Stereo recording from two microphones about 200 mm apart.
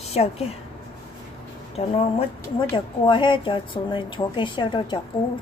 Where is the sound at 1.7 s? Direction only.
30° left (ahead or behind).